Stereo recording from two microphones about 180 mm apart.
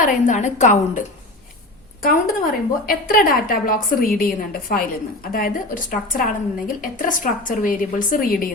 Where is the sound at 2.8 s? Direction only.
50° left (ahead or behind).